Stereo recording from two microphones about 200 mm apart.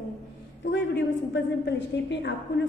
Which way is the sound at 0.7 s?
60° left (ahead or behind).